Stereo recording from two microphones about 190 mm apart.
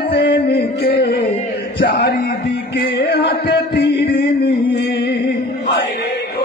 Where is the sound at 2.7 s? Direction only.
60° left (ahead or behind).